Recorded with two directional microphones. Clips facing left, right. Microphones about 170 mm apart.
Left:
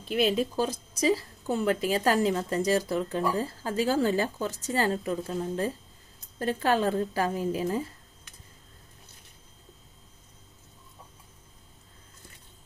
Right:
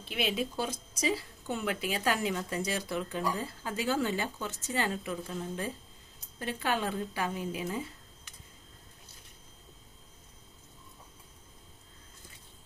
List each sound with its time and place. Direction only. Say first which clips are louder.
0.1 s speech: left 7 dB; 40° left (ahead or behind)